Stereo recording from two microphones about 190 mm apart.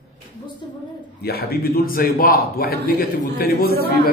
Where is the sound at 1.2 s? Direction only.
55° left (ahead or behind).